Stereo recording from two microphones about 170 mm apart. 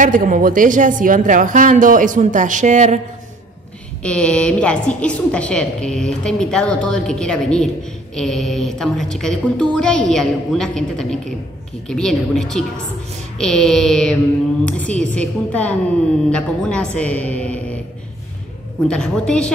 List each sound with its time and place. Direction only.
0.0 s a woman's voice: 50° right (ahead or behind)
4.0 s a woman's voice: 5° left (ahead or behind)
18.9 s a woman's voice: 5° left (ahead or behind)